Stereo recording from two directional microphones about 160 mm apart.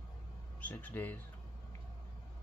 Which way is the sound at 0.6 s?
10° left (ahead or behind).